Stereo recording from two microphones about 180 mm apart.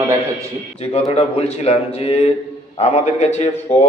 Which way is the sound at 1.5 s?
35° left (ahead or behind).